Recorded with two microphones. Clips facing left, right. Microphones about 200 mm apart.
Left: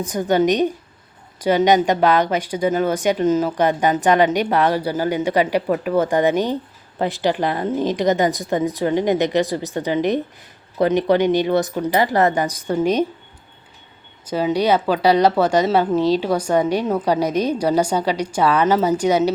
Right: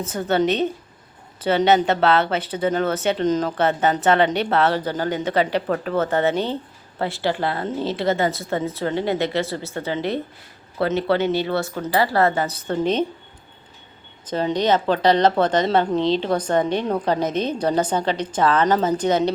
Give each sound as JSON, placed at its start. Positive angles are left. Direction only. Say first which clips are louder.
{"t": 0.0, "sound": "speech", "louder": "left 3 dB", "side_deg": 15}
{"t": 14.3, "sound": "speech", "louder": "left 2 dB", "side_deg": 10}